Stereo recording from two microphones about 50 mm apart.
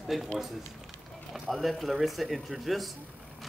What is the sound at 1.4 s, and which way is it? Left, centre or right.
Speech, centre.